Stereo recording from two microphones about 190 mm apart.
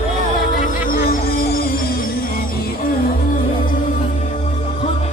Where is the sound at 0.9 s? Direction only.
50° left (ahead or behind).